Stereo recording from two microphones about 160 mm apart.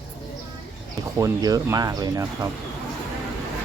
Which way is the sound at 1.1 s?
20° right (ahead or behind).